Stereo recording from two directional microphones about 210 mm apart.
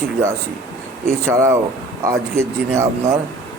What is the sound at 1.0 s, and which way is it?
Speech, 10° right (ahead or behind).